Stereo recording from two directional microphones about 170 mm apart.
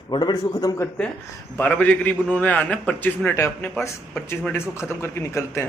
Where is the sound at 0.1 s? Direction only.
25° left (ahead or behind).